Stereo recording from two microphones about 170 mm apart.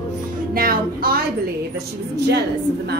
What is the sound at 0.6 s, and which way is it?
Music, 60° right (ahead or behind).